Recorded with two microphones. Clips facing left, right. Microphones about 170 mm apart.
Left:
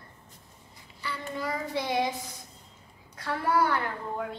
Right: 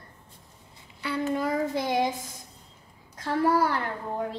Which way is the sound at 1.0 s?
55° right (ahead or behind).